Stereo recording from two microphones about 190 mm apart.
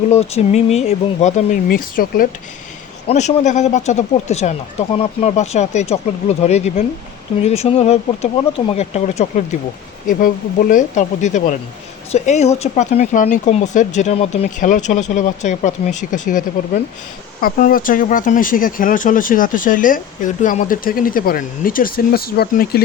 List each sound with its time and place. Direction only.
0.1 s speech: 35° left (ahead or behind)
1.6 s speech: 50° left (ahead or behind)
3.1 s speech: 35° left (ahead or behind)
17.4 s speech: 45° left (ahead or behind)